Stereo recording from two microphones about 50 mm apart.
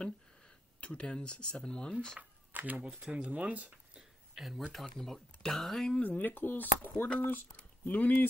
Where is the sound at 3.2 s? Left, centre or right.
Right.